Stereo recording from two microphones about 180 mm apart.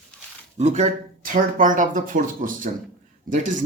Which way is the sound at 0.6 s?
40° right (ahead or behind).